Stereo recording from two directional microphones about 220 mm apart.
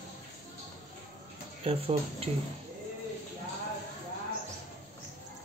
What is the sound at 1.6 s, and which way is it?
Speech, 25° right (ahead or behind).